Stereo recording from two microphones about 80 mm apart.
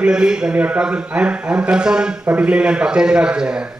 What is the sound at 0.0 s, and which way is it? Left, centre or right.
A man's voice, centre.